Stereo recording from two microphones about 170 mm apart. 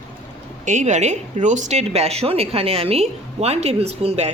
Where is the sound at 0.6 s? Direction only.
45° right (ahead or behind).